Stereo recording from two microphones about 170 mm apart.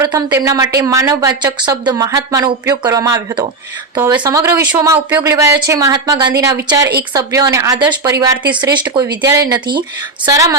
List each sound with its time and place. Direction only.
0.0 s speech: 20° right (ahead or behind)